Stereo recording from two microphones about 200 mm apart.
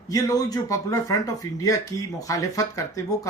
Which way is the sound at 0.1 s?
15° left (ahead or behind).